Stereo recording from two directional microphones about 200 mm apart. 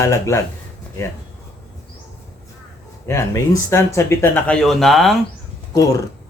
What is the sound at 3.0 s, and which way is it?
Speech, 15° left (ahead or behind).